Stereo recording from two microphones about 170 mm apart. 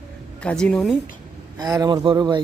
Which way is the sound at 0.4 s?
5° left (ahead or behind).